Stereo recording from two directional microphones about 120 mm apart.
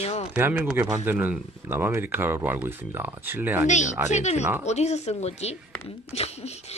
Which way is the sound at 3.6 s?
85° left.